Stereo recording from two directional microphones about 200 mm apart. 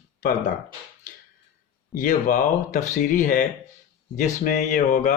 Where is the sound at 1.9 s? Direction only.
40° left (ahead or behind).